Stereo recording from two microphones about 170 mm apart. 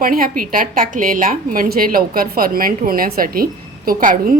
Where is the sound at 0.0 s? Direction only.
55° right (ahead or behind).